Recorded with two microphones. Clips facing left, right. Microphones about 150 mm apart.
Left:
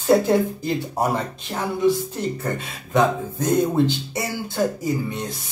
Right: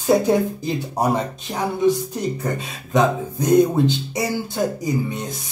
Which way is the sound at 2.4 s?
15° right (ahead or behind).